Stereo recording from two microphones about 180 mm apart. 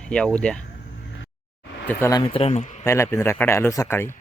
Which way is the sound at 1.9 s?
15° left (ahead or behind).